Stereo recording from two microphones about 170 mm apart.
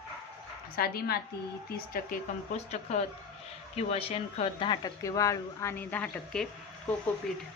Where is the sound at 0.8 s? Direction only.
65° left (ahead or behind).